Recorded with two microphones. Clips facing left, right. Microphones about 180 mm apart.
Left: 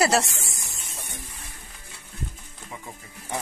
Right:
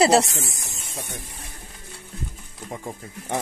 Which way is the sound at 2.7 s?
50° right (ahead or behind).